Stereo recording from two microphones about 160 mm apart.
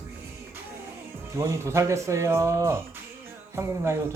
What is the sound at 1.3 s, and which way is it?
Speech, 20° right (ahead or behind).